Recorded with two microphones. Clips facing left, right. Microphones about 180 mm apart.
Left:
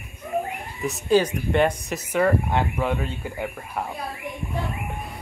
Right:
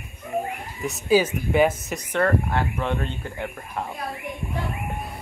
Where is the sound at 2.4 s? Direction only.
15° left (ahead or behind).